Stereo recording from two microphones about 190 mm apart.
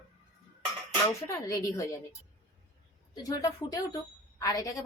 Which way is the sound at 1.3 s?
15° left (ahead or behind).